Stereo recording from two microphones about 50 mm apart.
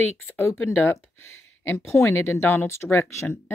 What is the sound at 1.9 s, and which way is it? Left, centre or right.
Speech, left.